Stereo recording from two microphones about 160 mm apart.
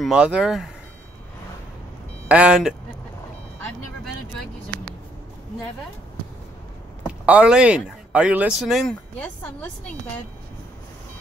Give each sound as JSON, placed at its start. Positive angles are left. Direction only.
{"t": 0.0, "sound": "speech", "side_deg": -5}
{"t": 2.2, "sound": "speech", "side_deg": -5}
{"t": 7.1, "sound": "speech", "side_deg": -10}